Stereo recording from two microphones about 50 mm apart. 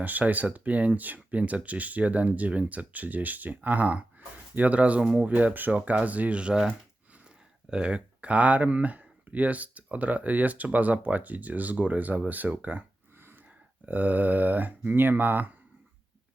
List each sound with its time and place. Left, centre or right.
0.0 s speech: right
13.8 s speech: right